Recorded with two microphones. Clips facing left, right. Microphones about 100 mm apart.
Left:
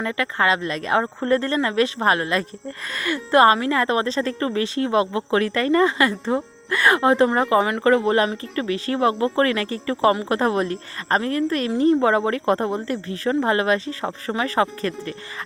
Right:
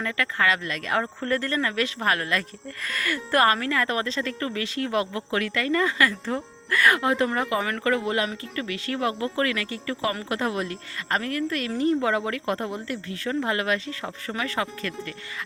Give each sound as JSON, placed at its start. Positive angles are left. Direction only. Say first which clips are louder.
{"t": 0.0, "sound": "speech", "louder": "left 3 dB", "side_deg": 25}